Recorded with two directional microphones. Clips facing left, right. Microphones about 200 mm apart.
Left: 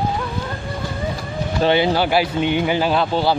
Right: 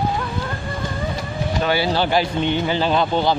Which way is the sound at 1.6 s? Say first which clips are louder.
Left 5 dB; 25° left (ahead or behind).